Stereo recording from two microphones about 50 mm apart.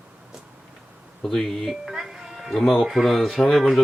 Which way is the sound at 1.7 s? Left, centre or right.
Centre.